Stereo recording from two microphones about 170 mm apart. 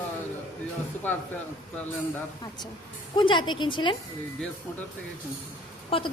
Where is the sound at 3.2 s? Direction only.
30° left (ahead or behind).